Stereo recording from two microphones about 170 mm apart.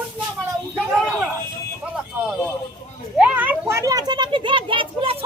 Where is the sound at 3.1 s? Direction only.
10° right (ahead or behind).